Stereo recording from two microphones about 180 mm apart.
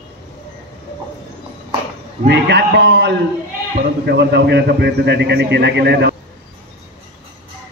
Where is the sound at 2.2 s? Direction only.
70° right (ahead or behind).